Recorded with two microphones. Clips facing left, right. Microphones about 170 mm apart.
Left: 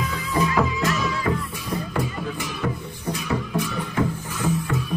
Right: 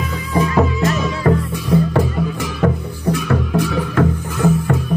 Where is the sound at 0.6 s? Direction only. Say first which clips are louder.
Right 6 dB; 50° right (ahead or behind).